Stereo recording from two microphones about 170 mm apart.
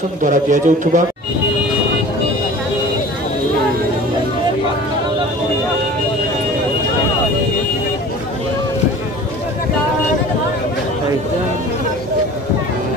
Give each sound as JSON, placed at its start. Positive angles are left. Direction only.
{"t": 0.2, "sound": "a man's voice", "side_deg": -50}